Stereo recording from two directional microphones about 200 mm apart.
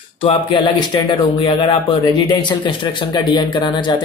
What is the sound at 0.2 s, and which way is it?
Speech, 25° left (ahead or behind).